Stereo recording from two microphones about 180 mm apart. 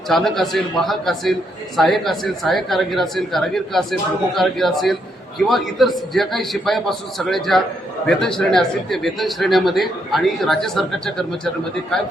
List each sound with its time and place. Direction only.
0.1 s a man's voice: centre (ahead or behind)